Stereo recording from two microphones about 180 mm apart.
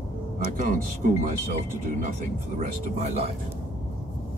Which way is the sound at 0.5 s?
45° right (ahead or behind).